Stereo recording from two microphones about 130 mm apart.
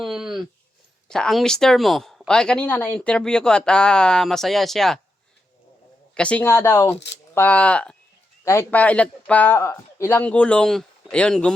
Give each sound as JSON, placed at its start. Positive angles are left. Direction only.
{"t": 0.0, "sound": "a sound", "side_deg": -5}
{"t": 1.0, "sound": "a woman's voice", "side_deg": 5}
{"t": 6.1, "sound": "a man's voice", "side_deg": 10}